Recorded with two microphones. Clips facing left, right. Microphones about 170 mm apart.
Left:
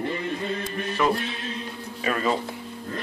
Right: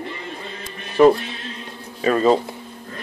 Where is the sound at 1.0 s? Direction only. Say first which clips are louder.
Right 11 dB; 35° right (ahead or behind).